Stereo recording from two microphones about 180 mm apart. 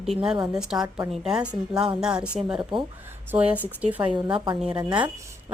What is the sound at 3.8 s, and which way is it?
Speech, 10° right (ahead or behind).